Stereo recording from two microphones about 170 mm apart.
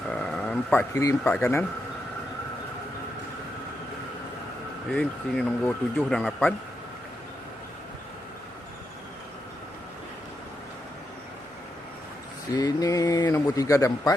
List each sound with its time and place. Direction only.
0.1 s speech: 5° left (ahead or behind)
4.9 s speech: 5° left (ahead or behind)
12.5 s speech: 25° left (ahead or behind)